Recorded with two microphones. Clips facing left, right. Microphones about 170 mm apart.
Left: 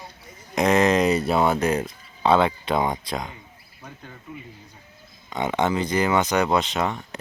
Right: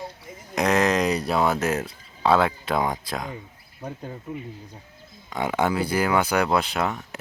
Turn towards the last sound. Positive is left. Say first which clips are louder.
# left 1 dB
turn(degrees=0)  # may be behind; listen again after turning